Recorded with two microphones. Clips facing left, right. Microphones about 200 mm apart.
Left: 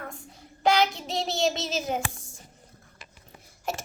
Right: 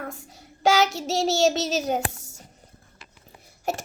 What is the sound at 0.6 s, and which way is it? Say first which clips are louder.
Child singing: right 2 dB; 85° right.